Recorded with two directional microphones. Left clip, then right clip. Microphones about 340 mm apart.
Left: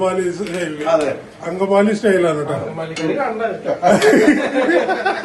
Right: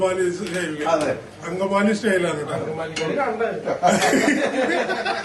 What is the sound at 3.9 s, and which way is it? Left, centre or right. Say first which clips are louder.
Speech: left 8 dB; left.